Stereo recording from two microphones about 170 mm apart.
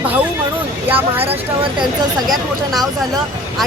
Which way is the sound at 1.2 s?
35° right (ahead or behind).